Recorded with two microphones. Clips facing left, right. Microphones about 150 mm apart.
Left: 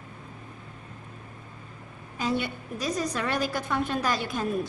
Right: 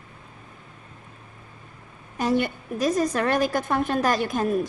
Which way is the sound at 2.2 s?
50° right (ahead or behind).